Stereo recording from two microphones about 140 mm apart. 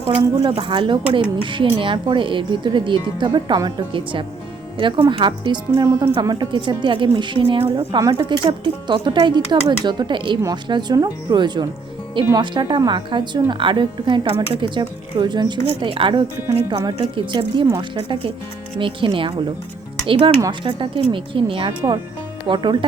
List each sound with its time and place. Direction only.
0.3 s speech: 40° right (ahead or behind)